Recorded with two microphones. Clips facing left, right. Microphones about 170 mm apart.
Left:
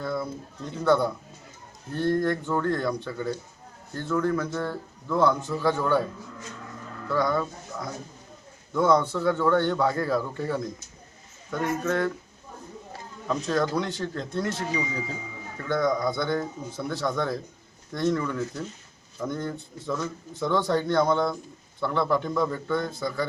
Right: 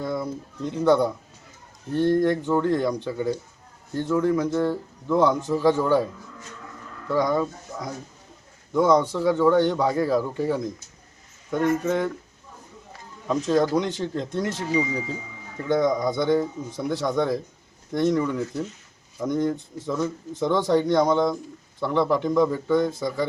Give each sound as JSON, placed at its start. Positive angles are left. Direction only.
{"t": 0.0, "sound": "pigeon", "side_deg": -15}
{"t": 0.9, "sound": "speech", "side_deg": -15}
{"t": 7.1, "sound": "speech", "side_deg": -15}
{"t": 13.2, "sound": "speech", "side_deg": -20}